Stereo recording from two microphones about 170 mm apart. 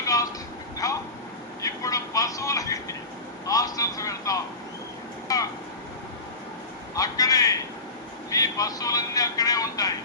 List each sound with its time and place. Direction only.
0.0 s vehicle: 20° left (ahead or behind)
5.3 s a sound: 20° left (ahead or behind)
6.9 s a man's voice: 20° left (ahead or behind)